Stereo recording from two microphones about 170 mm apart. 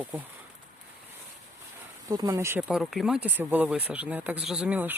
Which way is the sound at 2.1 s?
20° right (ahead or behind).